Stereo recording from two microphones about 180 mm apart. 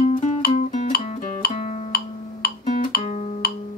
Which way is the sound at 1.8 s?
60° left (ahead or behind).